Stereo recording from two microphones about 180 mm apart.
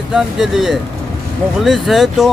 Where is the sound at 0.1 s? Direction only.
Centre (ahead or behind).